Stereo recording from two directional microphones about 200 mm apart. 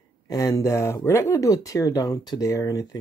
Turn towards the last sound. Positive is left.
turn(degrees=15)  # may be behind; listen again after turning